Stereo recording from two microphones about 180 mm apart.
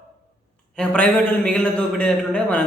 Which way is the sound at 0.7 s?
5° left (ahead or behind).